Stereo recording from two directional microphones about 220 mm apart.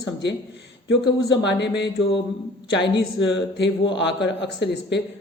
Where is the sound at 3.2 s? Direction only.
55° left (ahead or behind).